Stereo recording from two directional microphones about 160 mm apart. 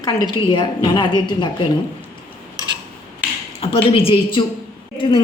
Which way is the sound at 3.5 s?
35° left (ahead or behind).